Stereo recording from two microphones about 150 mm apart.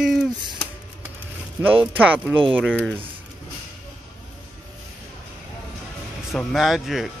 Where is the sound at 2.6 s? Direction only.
5° left (ahead or behind).